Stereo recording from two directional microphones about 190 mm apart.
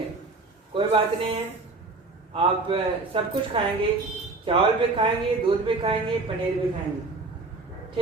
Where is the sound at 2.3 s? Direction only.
30° right (ahead or behind).